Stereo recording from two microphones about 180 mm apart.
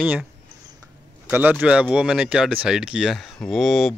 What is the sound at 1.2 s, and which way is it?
Speech, 10° right (ahead or behind).